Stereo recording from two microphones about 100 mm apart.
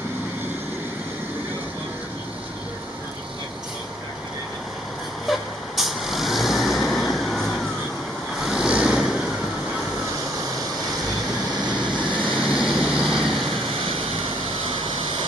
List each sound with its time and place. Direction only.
5.2 s vehicle: centre (ahead or behind)
12.0 s a sound: 55° right (ahead or behind)
12.5 s vehicle: 5° right (ahead or behind)